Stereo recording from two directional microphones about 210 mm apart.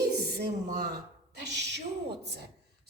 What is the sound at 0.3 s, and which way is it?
A woman's voice, 45° right (ahead or behind).